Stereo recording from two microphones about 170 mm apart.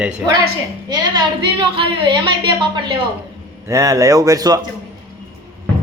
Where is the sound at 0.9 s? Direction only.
25° right (ahead or behind).